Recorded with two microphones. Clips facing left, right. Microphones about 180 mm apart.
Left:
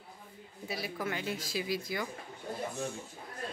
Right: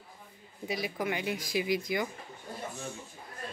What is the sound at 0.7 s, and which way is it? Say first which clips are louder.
A man's voice: right 4 dB; 15° right (ahead or behind).